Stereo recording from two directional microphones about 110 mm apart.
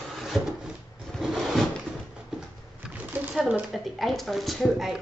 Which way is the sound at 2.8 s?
10° right (ahead or behind).